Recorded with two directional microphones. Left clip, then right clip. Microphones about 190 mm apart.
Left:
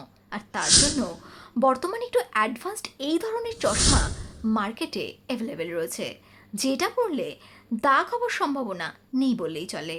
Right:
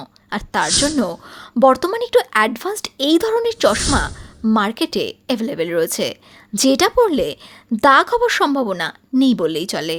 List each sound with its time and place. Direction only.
0.0 s a sound: 45° right (ahead or behind)
0.6 s speech: centre (ahead or behind)
1.3 s speech: 40° right (ahead or behind)
3.8 s speech: centre (ahead or behind)
4.4 s a woman's voice: 45° right (ahead or behind)